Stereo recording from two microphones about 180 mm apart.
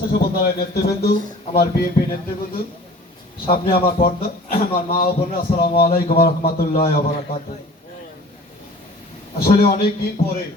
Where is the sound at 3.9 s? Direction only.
55° left (ahead or behind).